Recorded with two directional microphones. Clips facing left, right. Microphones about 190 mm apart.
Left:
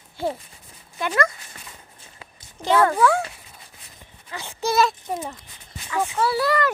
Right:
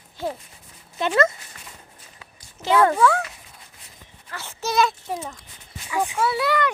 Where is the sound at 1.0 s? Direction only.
25° right (ahead or behind).